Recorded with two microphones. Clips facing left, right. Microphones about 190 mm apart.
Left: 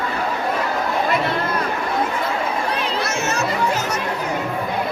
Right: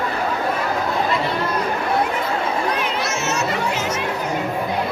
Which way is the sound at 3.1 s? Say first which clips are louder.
Even; 55° left (ahead or behind).